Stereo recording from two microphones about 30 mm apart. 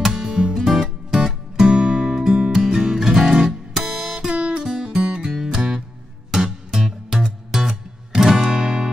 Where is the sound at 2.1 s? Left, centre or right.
Centre.